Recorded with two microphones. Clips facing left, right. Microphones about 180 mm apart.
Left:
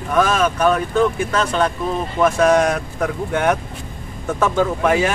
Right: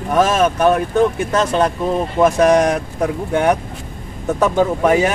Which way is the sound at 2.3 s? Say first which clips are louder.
Right 2 dB; 15° right (ahead or behind).